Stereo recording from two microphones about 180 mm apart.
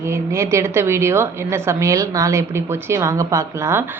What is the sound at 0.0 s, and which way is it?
Speech, 15° right (ahead or behind).